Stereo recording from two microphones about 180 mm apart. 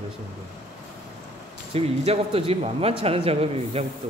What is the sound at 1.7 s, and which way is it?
Speech, 35° right (ahead or behind).